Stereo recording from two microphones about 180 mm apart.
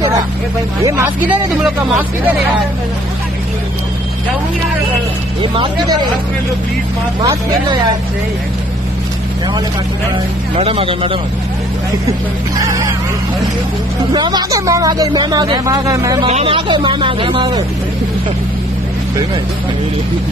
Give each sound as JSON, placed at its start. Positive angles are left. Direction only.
{"t": 0.8, "sound": "speech", "side_deg": -20}
{"t": 1.6, "sound": "speech", "side_deg": -5}
{"t": 5.4, "sound": "speech", "side_deg": -30}
{"t": 10.5, "sound": "speech", "side_deg": -30}
{"t": 12.6, "sound": "speech", "side_deg": -20}
{"t": 14.1, "sound": "speech", "side_deg": -25}
{"t": 16.3, "sound": "speech", "side_deg": -35}